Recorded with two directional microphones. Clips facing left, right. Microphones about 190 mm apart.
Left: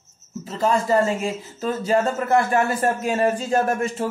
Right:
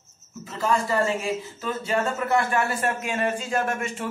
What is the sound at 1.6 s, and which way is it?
Speech, 35° left (ahead or behind).